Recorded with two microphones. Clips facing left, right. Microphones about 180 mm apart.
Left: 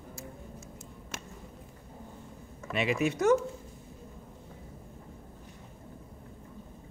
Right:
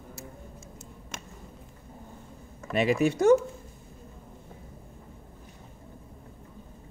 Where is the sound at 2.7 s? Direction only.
40° right (ahead or behind).